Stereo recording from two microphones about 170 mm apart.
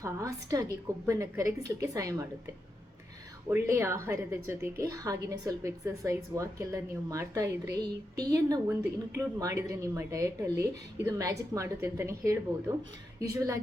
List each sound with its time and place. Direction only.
0.0 s a woman's voice: 20° right (ahead or behind)
3.5 s a woman's voice: 15° right (ahead or behind)